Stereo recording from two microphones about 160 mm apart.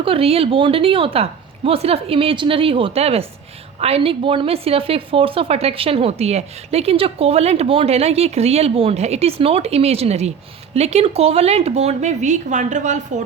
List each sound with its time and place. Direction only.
0.0 s a woman's voice: 35° right (ahead or behind)